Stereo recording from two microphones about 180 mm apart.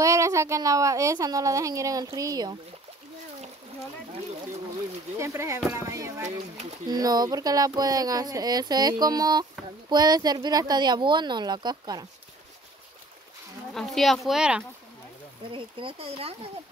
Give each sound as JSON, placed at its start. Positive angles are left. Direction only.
{"t": 0.0, "sound": "a woman's voice", "side_deg": -15}
{"t": 5.2, "sound": "a woman's voice", "side_deg": -15}
{"t": 6.2, "sound": "speech", "side_deg": -40}
{"t": 6.9, "sound": "speech", "side_deg": -20}
{"t": 13.7, "sound": "speech", "side_deg": 0}
{"t": 15.5, "sound": "speech", "side_deg": -30}